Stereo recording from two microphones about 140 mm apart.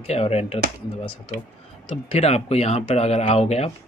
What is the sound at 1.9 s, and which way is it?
Speech, 50° left (ahead or behind).